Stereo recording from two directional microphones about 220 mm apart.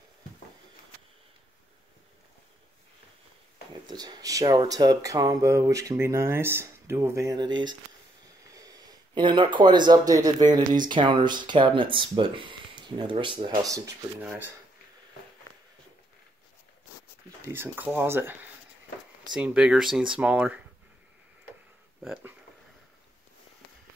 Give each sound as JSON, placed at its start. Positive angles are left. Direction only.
{"t": 3.8, "sound": "speech", "side_deg": -20}
{"t": 17.5, "sound": "speech", "side_deg": -10}
{"t": 22.0, "sound": "speech", "side_deg": -5}